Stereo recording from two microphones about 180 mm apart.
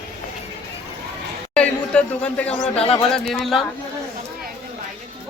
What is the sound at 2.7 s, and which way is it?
Speech, 35° left (ahead or behind).